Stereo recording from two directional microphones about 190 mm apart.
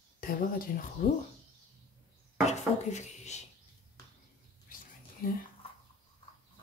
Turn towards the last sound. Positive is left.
turn(degrees=50)  # may be behind; listen again after turning